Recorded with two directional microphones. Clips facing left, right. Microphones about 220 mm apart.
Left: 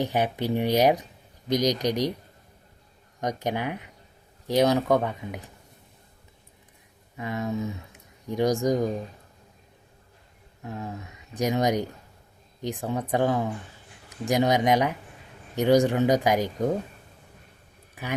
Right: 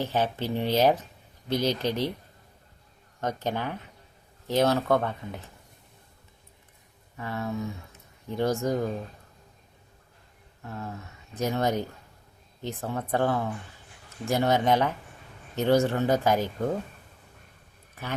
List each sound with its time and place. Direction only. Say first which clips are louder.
0.0 s speech: left 2 dB; 15° left (ahead or behind)
3.2 s speech: left 2 dB; 15° left (ahead or behind)
7.2 s speech: left 3 dB; 15° left (ahead or behind)
10.6 s speech: left 2 dB; 15° left (ahead or behind)